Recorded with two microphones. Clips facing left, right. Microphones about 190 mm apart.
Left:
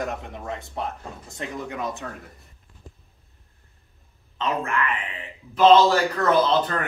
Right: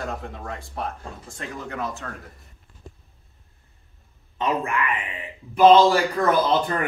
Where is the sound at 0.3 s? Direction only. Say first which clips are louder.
Left 2 dB; 20° left (ahead or behind).